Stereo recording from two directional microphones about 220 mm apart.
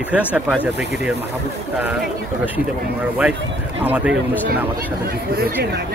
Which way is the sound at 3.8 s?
5° right (ahead or behind).